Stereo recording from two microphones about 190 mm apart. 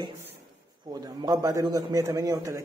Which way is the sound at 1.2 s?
20° right (ahead or behind).